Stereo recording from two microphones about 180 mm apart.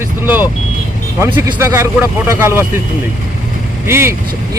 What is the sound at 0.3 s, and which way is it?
Speech, 10° right (ahead or behind).